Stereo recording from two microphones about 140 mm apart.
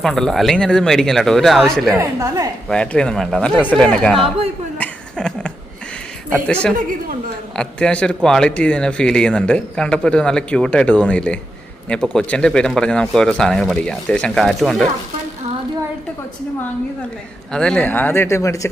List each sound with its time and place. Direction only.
0.0 s speech: centre (ahead or behind)
2.0 s a woman's voice: 20° right (ahead or behind)
2.6 s speech: 5° left (ahead or behind)
4.8 s a sound: 5° left (ahead or behind)
6.5 s speech: 10° left (ahead or behind)
17.5 s speech: 5° left (ahead or behind); by 18.7 s 20° left (ahead or behind)